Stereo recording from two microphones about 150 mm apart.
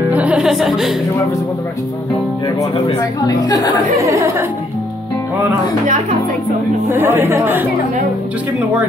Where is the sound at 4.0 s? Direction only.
20° right (ahead or behind).